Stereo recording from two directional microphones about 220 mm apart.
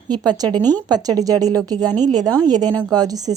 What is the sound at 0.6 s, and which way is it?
Speech, 10° left (ahead or behind).